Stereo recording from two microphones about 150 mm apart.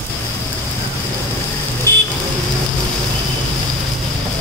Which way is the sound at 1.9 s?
20° left (ahead or behind).